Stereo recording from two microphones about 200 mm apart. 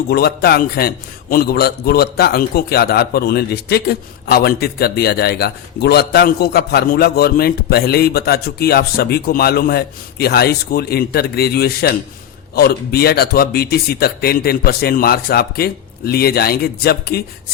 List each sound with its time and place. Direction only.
0.1 s a man's voice: 50° left (ahead or behind)